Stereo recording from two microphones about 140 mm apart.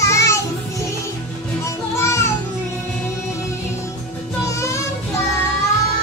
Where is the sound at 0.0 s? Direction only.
20° left (ahead or behind).